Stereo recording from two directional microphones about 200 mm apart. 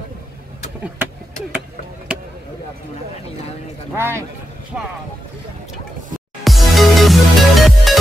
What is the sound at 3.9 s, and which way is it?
Speech, 10° right (ahead or behind).